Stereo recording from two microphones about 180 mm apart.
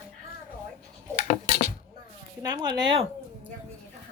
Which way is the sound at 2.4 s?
20° right (ahead or behind).